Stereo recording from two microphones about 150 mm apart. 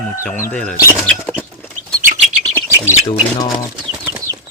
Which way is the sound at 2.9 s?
25° left (ahead or behind).